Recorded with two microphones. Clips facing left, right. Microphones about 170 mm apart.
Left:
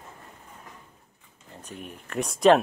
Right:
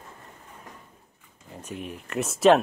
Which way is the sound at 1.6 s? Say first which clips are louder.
Right 5 dB; 5° right (ahead or behind).